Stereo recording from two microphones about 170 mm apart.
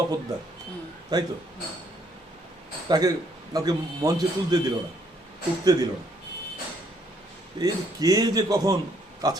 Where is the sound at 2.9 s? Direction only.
20° right (ahead or behind).